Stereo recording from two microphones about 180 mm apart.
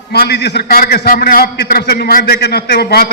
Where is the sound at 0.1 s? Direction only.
65° left (ahead or behind).